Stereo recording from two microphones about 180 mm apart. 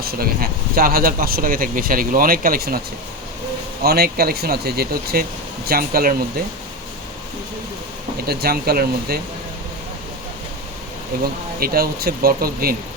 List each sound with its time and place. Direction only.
0.0 s speech: 55° right (ahead or behind)
3.8 s speech: 60° right (ahead or behind)
8.3 s speech: 60° right (ahead or behind)
11.6 s speech: 55° right (ahead or behind)